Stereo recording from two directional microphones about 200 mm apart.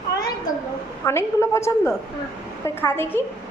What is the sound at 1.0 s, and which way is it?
A woman's voice, 15° left (ahead or behind).